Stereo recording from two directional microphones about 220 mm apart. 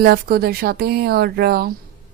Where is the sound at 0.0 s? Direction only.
45° right (ahead or behind).